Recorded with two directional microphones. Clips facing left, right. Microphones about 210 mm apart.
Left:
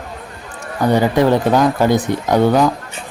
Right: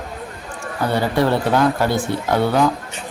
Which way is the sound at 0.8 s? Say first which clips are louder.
Left 5 dB; 15° left (ahead or behind).